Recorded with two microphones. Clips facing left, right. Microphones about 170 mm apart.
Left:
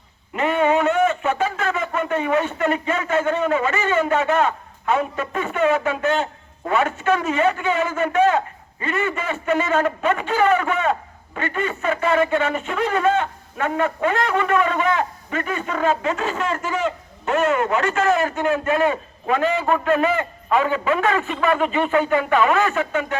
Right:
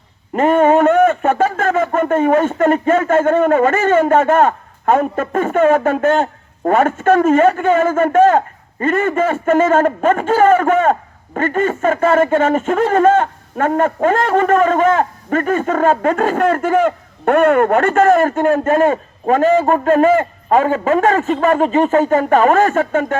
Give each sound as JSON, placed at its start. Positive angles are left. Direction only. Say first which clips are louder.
{"t": 0.3, "sound": "a man's voice", "louder": "right 7 dB", "side_deg": -45}